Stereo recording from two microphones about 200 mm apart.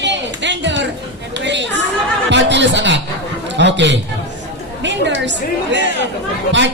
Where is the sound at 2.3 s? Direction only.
65° right (ahead or behind).